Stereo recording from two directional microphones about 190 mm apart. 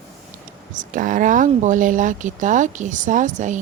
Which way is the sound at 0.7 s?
45° right (ahead or behind).